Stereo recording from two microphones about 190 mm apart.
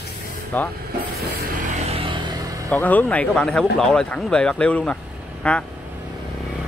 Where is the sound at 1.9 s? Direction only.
30° right (ahead or behind).